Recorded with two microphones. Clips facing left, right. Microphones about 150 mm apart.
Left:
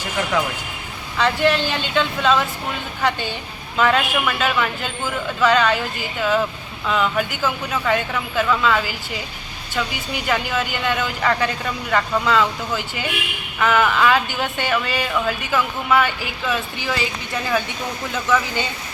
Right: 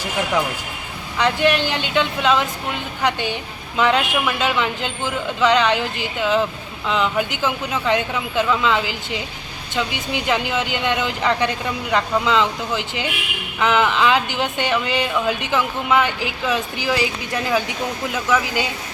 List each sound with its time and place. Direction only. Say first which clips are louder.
1.2 s a woman's voice: even; 15° right (ahead or behind)
18.1 s a woman's voice: left 1 dB; 10° right (ahead or behind)